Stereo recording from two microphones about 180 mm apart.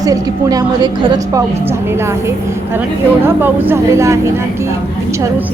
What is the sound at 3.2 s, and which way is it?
Speech, 10° right (ahead or behind).